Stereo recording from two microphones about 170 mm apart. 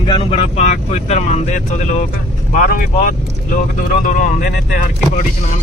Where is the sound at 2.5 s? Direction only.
55° left (ahead or behind).